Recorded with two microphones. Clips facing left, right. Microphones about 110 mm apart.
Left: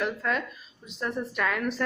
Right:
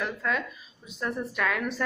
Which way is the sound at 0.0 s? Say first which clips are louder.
Left 1 dB; centre (ahead or behind).